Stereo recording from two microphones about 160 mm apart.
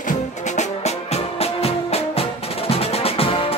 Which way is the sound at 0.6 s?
40° left (ahead or behind).